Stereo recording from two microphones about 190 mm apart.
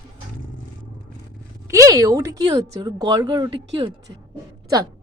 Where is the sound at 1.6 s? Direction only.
15° right (ahead or behind).